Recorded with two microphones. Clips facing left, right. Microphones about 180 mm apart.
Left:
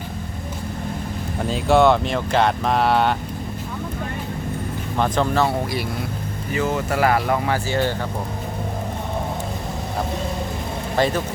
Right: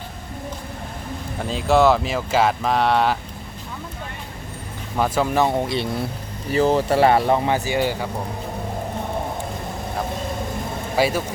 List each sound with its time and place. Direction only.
1.4 s speech: centre (ahead or behind)
4.9 s speech: 5° right (ahead or behind)
10.9 s speech: 5° right (ahead or behind)